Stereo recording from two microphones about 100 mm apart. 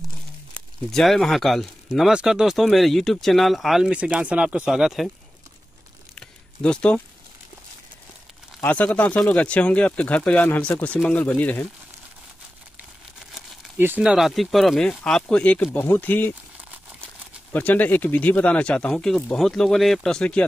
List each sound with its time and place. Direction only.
0.9 s speech: 5° left (ahead or behind)
3.9 s speech: 10° right (ahead or behind)
6.1 s a sound: 10° left (ahead or behind)
8.5 s speech: 15° left (ahead or behind)
13.7 s speech: 20° right (ahead or behind)
14.0 s speech: centre (ahead or behind); by 16.3 s 20° left (ahead or behind)
17.5 s speech: 15° left (ahead or behind)